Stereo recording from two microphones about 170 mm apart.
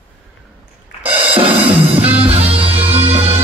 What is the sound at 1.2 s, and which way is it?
Music, 30° right (ahead or behind).